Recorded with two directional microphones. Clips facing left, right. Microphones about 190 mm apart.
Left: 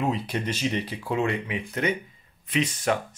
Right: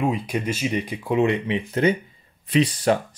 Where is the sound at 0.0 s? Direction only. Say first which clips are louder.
Right 3 dB; 10° right (ahead or behind).